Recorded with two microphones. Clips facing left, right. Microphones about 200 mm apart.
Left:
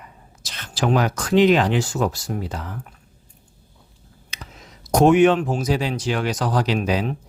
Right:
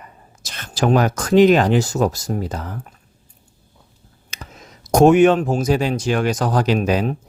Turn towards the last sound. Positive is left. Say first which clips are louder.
# right 4 dB
turn(degrees=-50)  # may be behind; listen again after turning